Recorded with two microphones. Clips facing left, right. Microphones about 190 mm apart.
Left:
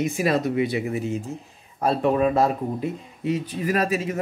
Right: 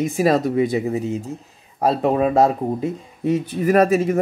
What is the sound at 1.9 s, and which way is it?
Speech, 25° right (ahead or behind).